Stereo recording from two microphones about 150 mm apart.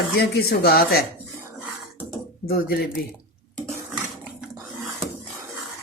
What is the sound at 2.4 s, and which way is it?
Speech, 90° left.